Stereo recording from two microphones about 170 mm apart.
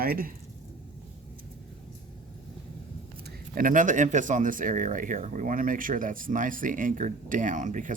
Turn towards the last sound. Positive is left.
turn(degrees=-50)  # may be behind; listen again after turning